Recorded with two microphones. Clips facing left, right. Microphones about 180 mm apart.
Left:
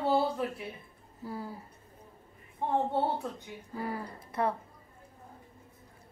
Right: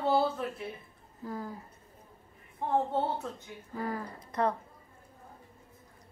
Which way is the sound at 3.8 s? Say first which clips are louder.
Right 1 dB; 10° left (ahead or behind).